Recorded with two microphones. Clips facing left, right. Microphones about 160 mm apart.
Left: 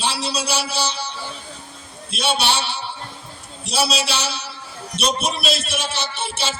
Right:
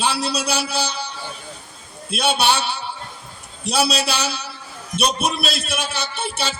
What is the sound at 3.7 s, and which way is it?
Speech, 55° right (ahead or behind).